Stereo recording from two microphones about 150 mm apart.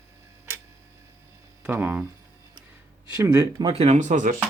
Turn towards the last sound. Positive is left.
turn(degrees=-55)  # may be behind; listen again after turning